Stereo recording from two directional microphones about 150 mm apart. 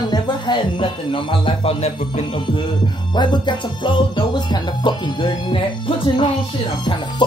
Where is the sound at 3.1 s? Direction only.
30° left (ahead or behind).